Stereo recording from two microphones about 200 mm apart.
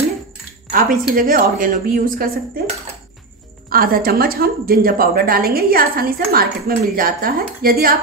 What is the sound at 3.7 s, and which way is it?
A woman's voice, 45° right (ahead or behind).